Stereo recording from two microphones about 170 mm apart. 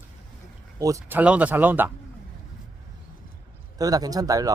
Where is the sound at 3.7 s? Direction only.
20° right (ahead or behind).